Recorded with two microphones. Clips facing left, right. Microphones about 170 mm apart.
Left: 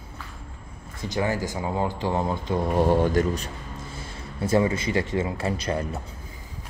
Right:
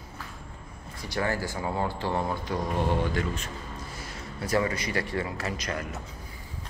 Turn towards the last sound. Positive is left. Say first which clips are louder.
# left 6 dB
turn(degrees=30)  # may be behind; listen again after turning